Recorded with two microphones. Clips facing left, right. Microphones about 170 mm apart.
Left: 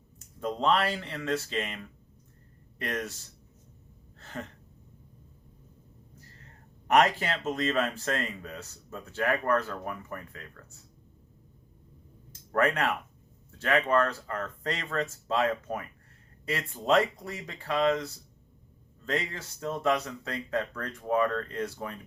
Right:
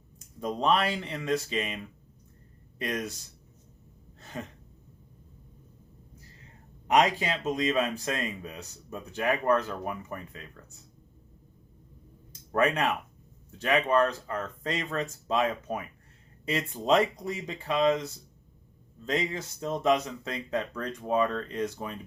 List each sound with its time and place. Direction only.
0.3 s speech: 15° right (ahead or behind)
4.2 s gasp: 15° right (ahead or behind)
6.8 s speech: 10° right (ahead or behind)
12.3 s speech: 20° right (ahead or behind)